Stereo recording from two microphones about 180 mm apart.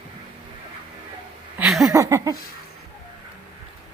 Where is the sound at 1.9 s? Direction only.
15° right (ahead or behind).